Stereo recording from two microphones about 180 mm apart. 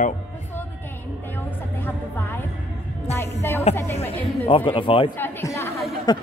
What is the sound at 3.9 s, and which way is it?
Speech, 30° left (ahead or behind).